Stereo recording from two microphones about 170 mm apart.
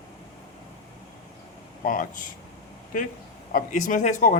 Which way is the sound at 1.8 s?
55° left (ahead or behind).